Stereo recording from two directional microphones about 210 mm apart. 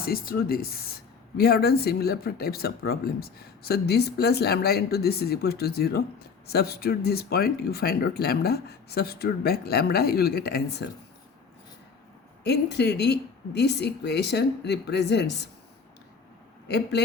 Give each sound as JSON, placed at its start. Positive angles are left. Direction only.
{"t": 0.0, "sound": "speech", "side_deg": 45}
{"t": 12.4, "sound": "speech", "side_deg": 50}
{"t": 16.6, "sound": "speech", "side_deg": 50}